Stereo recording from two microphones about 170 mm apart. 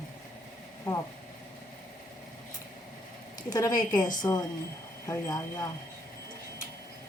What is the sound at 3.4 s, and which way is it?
A woman's voice, 20° left (ahead or behind).